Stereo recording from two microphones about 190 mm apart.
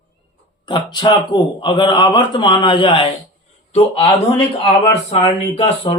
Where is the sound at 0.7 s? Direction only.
25° left (ahead or behind).